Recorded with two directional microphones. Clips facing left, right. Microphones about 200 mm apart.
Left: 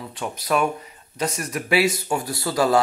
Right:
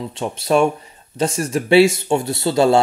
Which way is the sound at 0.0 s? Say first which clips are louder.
Right 6 dB; 25° right (ahead or behind).